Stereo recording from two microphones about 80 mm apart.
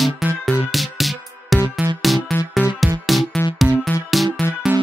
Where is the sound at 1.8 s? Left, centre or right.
Right.